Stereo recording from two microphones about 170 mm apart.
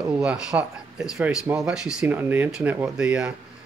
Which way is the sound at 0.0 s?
5° right (ahead or behind).